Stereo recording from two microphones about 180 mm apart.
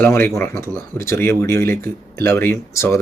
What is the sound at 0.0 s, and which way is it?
Speech, 10° left (ahead or behind).